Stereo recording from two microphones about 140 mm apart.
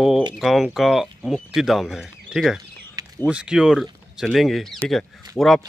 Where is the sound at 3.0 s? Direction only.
25° right (ahead or behind).